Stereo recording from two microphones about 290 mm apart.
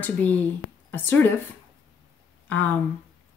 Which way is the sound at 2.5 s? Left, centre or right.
Centre.